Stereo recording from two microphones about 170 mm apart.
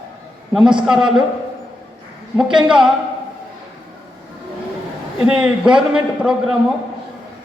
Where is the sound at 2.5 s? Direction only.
5° right (ahead or behind).